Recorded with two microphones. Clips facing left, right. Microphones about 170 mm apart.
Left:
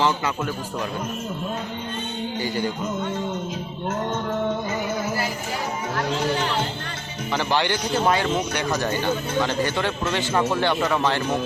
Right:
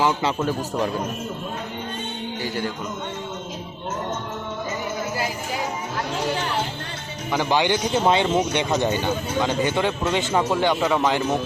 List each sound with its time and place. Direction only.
0.3 s speech: 30° right (ahead or behind)
7.3 s a man's voice: 15° right (ahead or behind)